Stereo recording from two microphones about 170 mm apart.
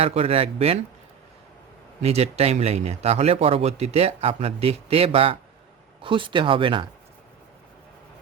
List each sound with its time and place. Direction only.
0.0 s speech: 35° right (ahead or behind)
2.0 s speech: 40° right (ahead or behind)